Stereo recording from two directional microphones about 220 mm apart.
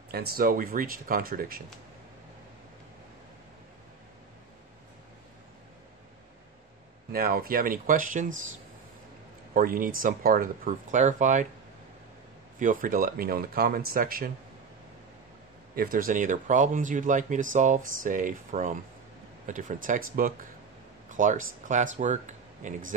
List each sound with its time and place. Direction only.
0.1 s speech: 45° right (ahead or behind)
7.1 s speech: 45° right (ahead or behind)
9.5 s speech: 40° right (ahead or behind)
12.5 s speech: 35° right (ahead or behind)
15.7 s speech: 40° right (ahead or behind)